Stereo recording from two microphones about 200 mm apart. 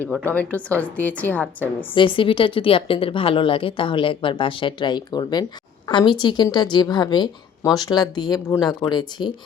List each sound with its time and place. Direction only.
0.0 s a woman's voice: 10° left (ahead or behind)
2.0 s speech: 25° left (ahead or behind)